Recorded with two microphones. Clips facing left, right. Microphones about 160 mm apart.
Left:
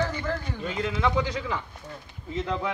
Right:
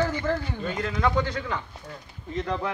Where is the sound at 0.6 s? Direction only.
5° left (ahead or behind).